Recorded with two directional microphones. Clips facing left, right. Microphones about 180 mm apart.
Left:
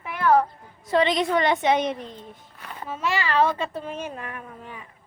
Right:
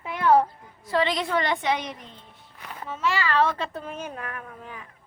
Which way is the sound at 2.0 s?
40° left (ahead or behind).